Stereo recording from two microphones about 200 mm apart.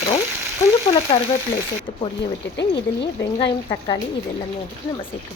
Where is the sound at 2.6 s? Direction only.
60° left (ahead or behind).